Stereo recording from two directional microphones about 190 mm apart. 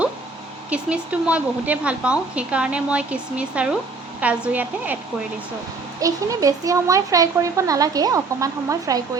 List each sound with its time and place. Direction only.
0.7 s speech: 5° right (ahead or behind)
6.0 s speech: 20° right (ahead or behind)